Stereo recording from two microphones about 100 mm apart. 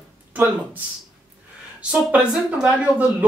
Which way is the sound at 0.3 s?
20° right (ahead or behind).